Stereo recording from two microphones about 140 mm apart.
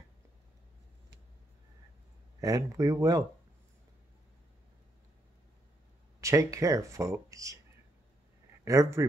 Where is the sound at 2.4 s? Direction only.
25° right (ahead or behind).